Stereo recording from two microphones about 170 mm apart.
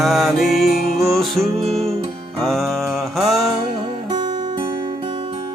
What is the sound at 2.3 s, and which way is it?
Mantra, centre (ahead or behind).